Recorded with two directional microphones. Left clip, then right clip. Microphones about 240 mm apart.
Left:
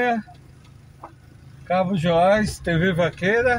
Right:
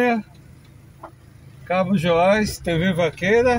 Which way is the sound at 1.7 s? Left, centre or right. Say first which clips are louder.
Right 1 dB; right.